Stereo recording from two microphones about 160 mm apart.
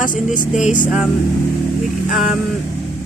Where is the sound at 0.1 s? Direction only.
55° left (ahead or behind).